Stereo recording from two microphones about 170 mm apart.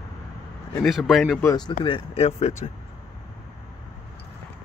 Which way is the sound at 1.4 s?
25° left (ahead or behind).